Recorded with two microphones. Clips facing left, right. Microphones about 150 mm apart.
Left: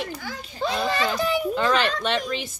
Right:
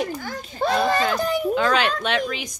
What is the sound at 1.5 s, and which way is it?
Speech, centre (ahead or behind).